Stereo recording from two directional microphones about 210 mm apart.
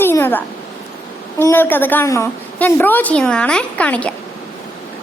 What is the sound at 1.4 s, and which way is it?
A woman's voice, 10° left (ahead or behind).